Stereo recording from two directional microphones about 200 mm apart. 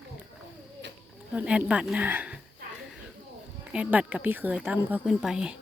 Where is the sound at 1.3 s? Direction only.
5° right (ahead or behind).